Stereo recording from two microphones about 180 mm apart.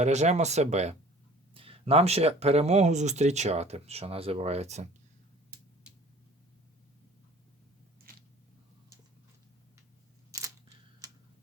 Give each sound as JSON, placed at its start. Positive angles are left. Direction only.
{"t": 0.0, "sound": "speech", "side_deg": -40}
{"t": 10.3, "sound": "camera", "side_deg": -20}
{"t": 11.0, "sound": "tick-tock", "side_deg": -20}